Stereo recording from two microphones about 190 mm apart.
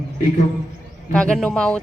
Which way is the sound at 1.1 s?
5° left (ahead or behind).